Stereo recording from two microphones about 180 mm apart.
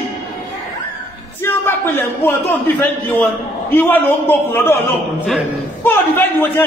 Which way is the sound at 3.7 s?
10° left (ahead or behind).